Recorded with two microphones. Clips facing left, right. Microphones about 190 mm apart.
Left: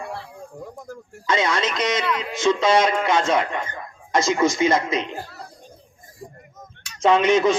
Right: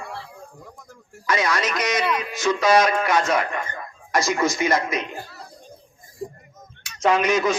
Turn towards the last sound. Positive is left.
turn(degrees=25)  # may be behind; listen again after turning